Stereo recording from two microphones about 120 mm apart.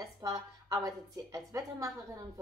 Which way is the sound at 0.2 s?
30° right (ahead or behind).